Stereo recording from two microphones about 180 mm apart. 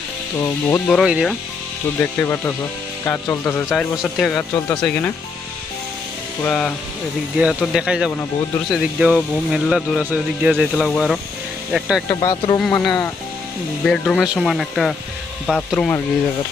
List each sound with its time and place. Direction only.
0.4 s speech: 15° left (ahead or behind)
0.9 s speech: centre (ahead or behind)
2.0 s speech: 15° left (ahead or behind)
6.4 s speech: 5° left (ahead or behind)
7.3 s speech: 5° right (ahead or behind)
12.1 s speech: 25° left (ahead or behind)
12.5 s speech: 5° left (ahead or behind)